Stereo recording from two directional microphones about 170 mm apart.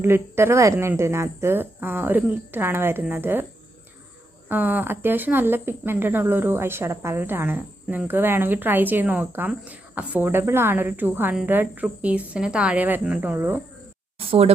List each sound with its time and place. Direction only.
0.0 s speech: 15° right (ahead or behind)
4.4 s speech: 10° right (ahead or behind)
14.2 s speech: 35° right (ahead or behind)